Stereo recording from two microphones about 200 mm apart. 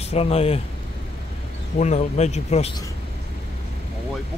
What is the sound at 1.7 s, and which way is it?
Speech, 35° left (ahead or behind).